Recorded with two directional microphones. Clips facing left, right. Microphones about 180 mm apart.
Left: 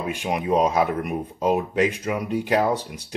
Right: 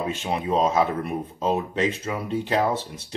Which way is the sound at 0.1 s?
15° left (ahead or behind).